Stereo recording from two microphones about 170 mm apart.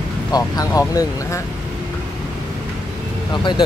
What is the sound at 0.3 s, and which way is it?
Speech, 20° left (ahead or behind).